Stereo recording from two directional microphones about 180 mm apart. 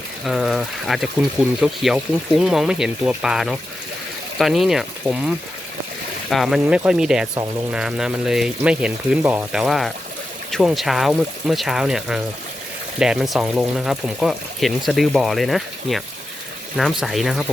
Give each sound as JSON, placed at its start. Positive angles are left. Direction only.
{"t": 0.3, "sound": "speech", "side_deg": 0}
{"t": 6.3, "sound": "speech", "side_deg": 0}